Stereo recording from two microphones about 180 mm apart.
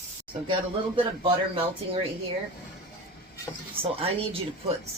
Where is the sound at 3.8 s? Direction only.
10° right (ahead or behind).